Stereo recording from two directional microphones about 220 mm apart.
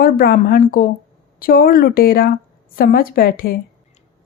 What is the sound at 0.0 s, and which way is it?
A woman's voice, 45° left (ahead or behind).